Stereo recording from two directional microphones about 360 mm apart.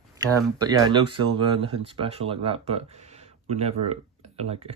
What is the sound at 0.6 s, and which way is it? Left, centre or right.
Speech, centre.